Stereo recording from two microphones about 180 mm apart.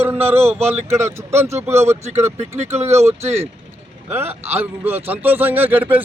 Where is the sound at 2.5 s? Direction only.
40° right (ahead or behind).